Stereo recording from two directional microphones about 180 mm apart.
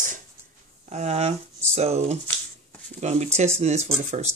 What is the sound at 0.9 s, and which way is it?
Speech, 35° right (ahead or behind).